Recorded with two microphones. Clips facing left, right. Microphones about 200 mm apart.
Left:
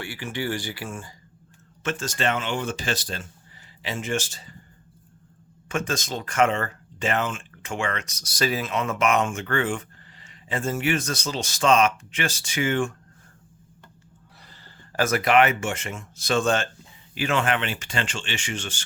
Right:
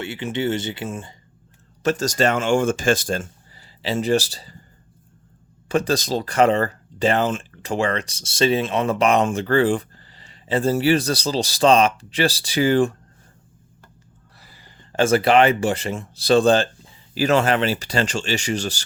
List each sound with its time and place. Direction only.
0.0 s speech: 20° right (ahead or behind)
1.8 s speech: 40° right (ahead or behind)
3.8 s speech: 35° right (ahead or behind)
5.6 s speech: 35° right (ahead or behind)
14.3 s a sound: 10° right (ahead or behind)
14.9 s speech: 30° right (ahead or behind)